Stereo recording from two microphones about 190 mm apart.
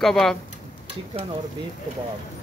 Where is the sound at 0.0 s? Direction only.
Centre (ahead or behind).